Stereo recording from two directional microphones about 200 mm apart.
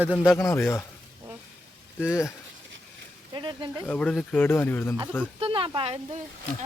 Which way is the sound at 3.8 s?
5° left (ahead or behind).